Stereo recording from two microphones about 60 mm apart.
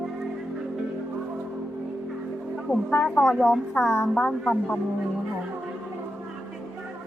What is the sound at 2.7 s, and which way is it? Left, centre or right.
A woman's voice, centre.